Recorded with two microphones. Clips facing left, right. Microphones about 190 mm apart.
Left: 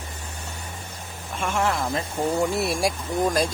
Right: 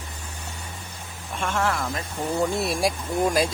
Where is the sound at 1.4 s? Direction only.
10° left (ahead or behind).